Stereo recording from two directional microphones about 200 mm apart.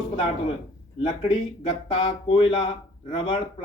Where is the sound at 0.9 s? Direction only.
25° left (ahead or behind).